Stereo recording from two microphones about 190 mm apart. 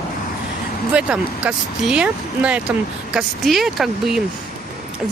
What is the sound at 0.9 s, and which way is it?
A woman's voice, 5° right (ahead or behind).